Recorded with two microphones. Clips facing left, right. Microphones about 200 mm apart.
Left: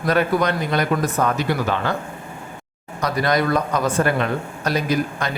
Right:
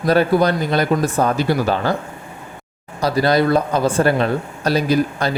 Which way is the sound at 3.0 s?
30° right (ahead or behind).